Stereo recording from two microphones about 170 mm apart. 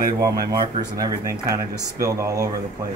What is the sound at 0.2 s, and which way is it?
Speech, 20° right (ahead or behind).